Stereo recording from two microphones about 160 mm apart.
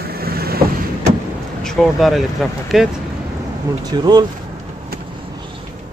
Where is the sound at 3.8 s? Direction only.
25° right (ahead or behind).